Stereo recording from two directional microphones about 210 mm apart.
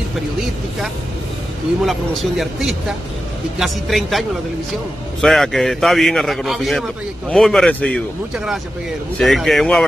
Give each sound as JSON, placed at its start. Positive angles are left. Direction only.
{"t": 1.9, "sound": "a man's voice", "side_deg": 0}
{"t": 9.2, "sound": "a man's voice", "side_deg": 0}